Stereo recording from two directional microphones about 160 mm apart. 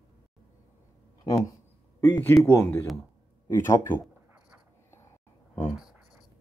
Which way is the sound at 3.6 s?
15° left (ahead or behind).